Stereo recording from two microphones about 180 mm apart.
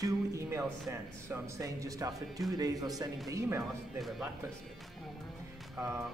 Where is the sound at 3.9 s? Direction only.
Centre (ahead or behind).